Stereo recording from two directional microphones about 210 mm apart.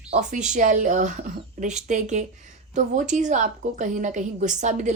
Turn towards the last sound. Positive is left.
turn(degrees=-35)  # may be behind; listen again after turning